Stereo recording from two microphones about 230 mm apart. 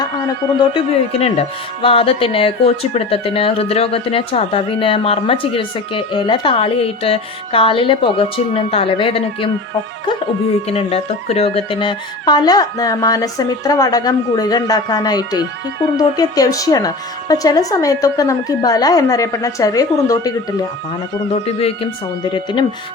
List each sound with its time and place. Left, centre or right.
1.2 s speech: left
10.7 s speech: left
21.4 s speech: left